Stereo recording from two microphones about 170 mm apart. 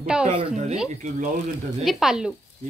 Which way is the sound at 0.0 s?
5° right (ahead or behind).